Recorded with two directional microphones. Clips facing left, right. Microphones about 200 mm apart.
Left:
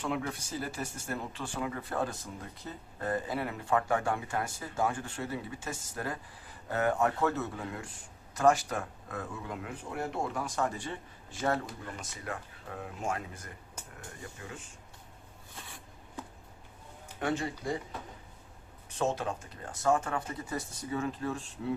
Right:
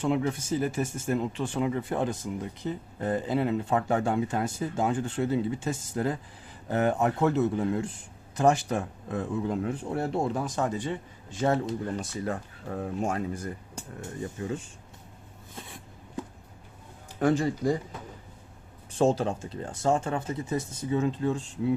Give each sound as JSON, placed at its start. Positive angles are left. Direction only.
{"t": 0.0, "sound": "speech", "side_deg": -25}
{"t": 11.9, "sound": "speech", "side_deg": -35}
{"t": 17.2, "sound": "speech", "side_deg": -35}
{"t": 18.9, "sound": "speech", "side_deg": -30}